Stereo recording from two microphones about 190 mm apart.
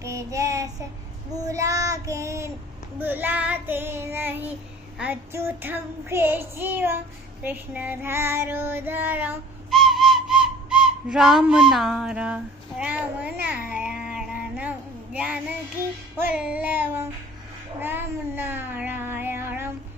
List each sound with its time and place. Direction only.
0.0 s child singing: 15° right (ahead or behind)
17.7 s cat: 10° right (ahead or behind)